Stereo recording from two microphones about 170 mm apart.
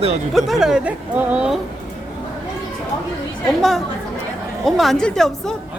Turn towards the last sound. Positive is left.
turn(degrees=5)  # may be behind; listen again after turning